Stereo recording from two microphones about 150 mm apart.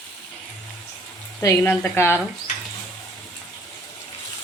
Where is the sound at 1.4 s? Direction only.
20° left (ahead or behind).